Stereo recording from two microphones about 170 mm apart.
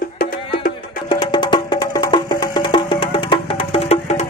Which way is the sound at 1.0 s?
25° left (ahead or behind).